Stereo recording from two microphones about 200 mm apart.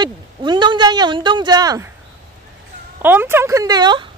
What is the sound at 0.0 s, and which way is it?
Speech, 20° right (ahead or behind).